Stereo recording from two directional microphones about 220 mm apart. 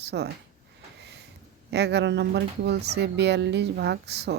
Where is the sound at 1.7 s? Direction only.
50° right (ahead or behind).